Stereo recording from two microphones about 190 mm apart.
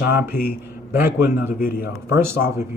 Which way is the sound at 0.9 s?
10° right (ahead or behind).